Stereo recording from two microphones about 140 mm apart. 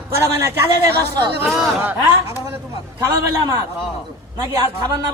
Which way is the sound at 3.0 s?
20° right (ahead or behind).